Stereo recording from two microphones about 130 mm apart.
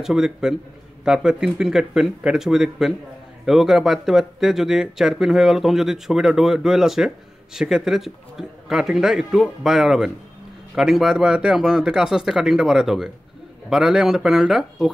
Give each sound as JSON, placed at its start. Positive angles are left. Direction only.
{"t": 0.0, "sound": "speech", "side_deg": -5}